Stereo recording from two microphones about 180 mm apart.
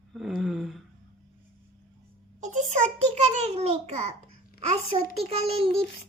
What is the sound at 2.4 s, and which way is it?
A child's voice, 40° right (ahead or behind).